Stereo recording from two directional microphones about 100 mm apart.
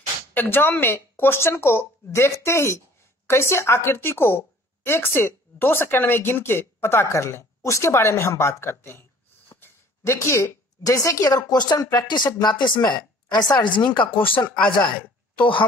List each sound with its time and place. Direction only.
0.3 s a woman's voice: 20° left (ahead or behind); by 15.0 s 55° left (ahead or behind)